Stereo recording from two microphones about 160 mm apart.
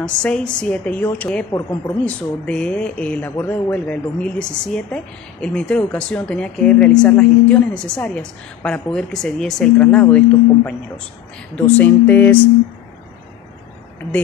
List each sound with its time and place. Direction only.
0.0 s speech: 5° left (ahead or behind)
1.5 s a woman's voice: 20° left (ahead or behind)
2.0 s speech: 5° left (ahead or behind)